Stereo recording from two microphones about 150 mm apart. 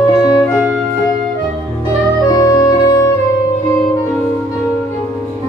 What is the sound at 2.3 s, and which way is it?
Music, 25° left (ahead or behind).